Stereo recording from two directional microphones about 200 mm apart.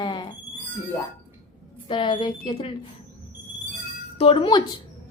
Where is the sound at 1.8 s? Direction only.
25° left (ahead or behind).